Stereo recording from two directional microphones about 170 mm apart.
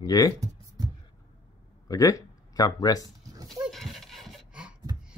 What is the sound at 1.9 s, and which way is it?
Speech, 20° left (ahead or behind).